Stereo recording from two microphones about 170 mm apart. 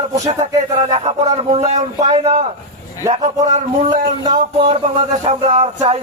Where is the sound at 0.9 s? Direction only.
40° right (ahead or behind).